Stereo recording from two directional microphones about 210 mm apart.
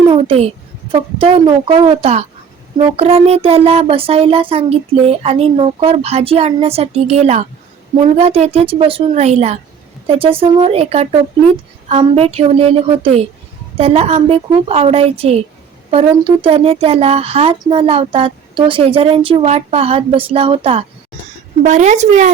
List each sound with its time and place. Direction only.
0.1 s a woman's voice: 30° right (ahead or behind)